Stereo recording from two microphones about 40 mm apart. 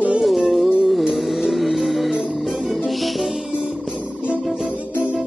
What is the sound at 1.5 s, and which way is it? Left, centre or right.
Vehicle, centre.